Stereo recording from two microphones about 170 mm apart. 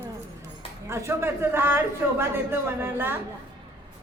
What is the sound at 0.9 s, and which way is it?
A man's voice, 15° right (ahead or behind).